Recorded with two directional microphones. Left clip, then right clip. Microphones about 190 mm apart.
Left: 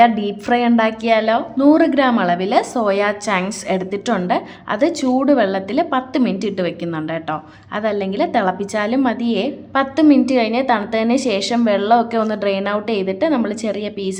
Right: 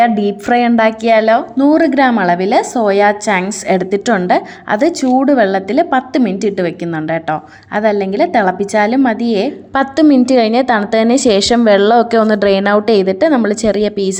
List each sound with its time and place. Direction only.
0.0 s a woman's voice: 25° right (ahead or behind)